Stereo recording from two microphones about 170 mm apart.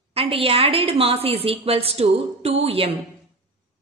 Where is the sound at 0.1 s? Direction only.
35° right (ahead or behind).